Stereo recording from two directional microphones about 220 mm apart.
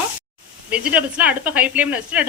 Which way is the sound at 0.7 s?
5° right (ahead or behind).